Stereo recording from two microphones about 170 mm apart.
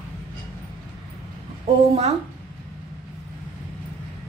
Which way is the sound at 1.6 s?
40° right (ahead or behind).